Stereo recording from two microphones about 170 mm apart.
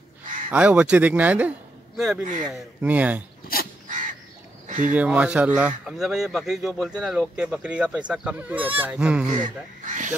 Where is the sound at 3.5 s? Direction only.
60° left (ahead or behind).